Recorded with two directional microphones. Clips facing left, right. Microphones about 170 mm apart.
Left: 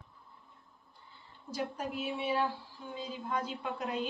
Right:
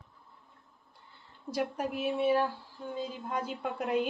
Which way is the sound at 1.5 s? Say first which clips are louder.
Right 4 dB; 65° right (ahead or behind).